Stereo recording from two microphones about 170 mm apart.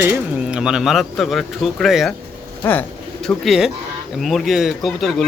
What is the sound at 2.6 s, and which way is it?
Speech, 10° left (ahead or behind).